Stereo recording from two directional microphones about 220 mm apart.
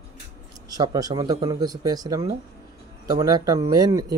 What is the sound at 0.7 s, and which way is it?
Speech, 15° right (ahead or behind).